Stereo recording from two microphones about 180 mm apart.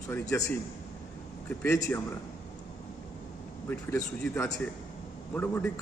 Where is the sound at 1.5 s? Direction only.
10° left (ahead or behind).